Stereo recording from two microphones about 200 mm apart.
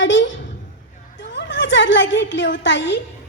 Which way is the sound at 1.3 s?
65° left (ahead or behind).